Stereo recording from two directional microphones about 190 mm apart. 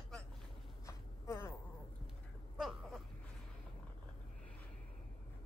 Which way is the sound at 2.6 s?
Centre (ahead or behind).